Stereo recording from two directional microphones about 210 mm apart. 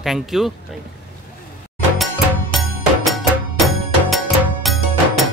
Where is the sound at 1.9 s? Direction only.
Centre (ahead or behind).